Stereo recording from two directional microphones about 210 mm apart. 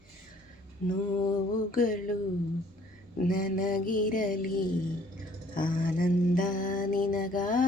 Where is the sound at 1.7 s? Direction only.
40° left (ahead or behind).